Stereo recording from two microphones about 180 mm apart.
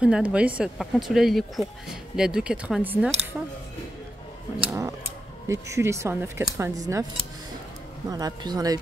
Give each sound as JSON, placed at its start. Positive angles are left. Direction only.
{"t": 0.0, "sound": "speech", "side_deg": -5}
{"t": 4.6, "sound": "a sound", "side_deg": -15}
{"t": 5.5, "sound": "speech", "side_deg": -15}
{"t": 8.1, "sound": "speech", "side_deg": -20}